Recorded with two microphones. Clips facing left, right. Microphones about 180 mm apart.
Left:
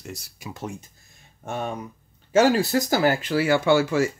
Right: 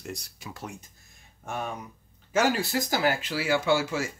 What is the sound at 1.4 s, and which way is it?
Speech, 30° left (ahead or behind).